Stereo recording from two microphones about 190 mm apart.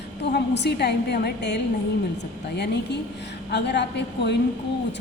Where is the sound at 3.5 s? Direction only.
65° left (ahead or behind).